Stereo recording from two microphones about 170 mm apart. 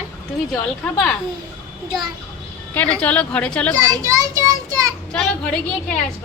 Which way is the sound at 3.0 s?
10° left (ahead or behind).